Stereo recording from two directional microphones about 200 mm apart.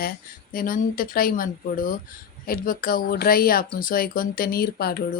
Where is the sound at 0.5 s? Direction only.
45° left (ahead or behind).